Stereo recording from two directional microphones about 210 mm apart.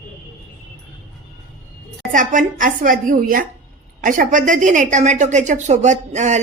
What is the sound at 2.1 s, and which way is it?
A woman's voice, 40° right (ahead or behind).